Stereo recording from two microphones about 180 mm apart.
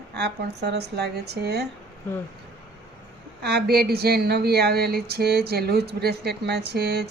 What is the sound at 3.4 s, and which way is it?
Speech, 60° right (ahead or behind).